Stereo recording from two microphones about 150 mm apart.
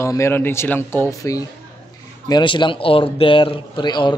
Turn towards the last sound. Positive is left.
turn(degrees=30)  # may be behind; listen again after turning